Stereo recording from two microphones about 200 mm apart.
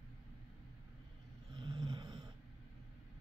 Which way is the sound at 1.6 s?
20° right (ahead or behind).